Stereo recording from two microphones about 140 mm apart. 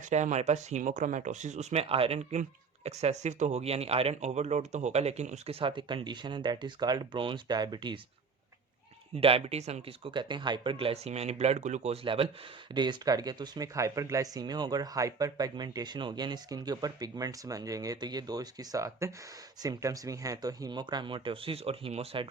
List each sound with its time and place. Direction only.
0.1 s speech: 55° right (ahead or behind); by 7.9 s 30° right (ahead or behind)
9.1 s speech: 45° right (ahead or behind)